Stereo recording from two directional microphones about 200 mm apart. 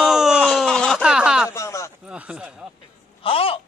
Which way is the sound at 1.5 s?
15° left (ahead or behind).